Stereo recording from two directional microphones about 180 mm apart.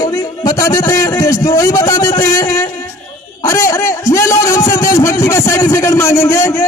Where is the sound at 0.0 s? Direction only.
20° left (ahead or behind).